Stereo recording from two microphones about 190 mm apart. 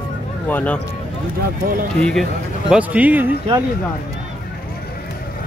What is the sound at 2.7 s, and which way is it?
Speech, 5° right (ahead or behind).